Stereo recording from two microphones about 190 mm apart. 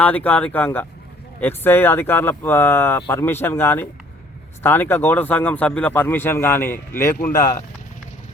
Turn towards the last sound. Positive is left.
turn(degrees=15)  # may be behind; listen again after turning